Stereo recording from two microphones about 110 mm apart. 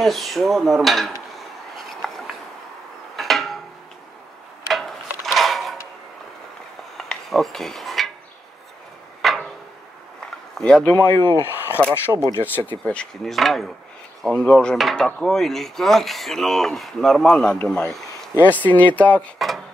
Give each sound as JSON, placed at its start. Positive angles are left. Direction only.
{"t": 0.0, "sound": "speech", "side_deg": 0}
{"t": 2.0, "sound": "a sound", "side_deg": 0}
{"t": 4.6, "sound": "a sound", "side_deg": 0}
{"t": 7.0, "sound": "cutlery", "side_deg": 0}
{"t": 9.2, "sound": "tick-tock", "side_deg": 0}
{"t": 10.6, "sound": "dishes", "side_deg": 10}
{"t": 11.1, "sound": "speech", "side_deg": 25}
{"t": 12.4, "sound": "dishes", "side_deg": 20}
{"t": 12.8, "sound": "speech", "side_deg": 10}
{"t": 14.2, "sound": "dishes", "side_deg": 5}
{"t": 15.0, "sound": "speech", "side_deg": 5}
{"t": 18.4, "sound": "dishes", "side_deg": 15}
{"t": 19.3, "sound": "speech", "side_deg": 0}